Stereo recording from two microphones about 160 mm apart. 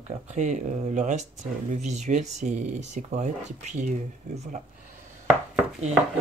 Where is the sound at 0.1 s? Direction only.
45° right (ahead or behind).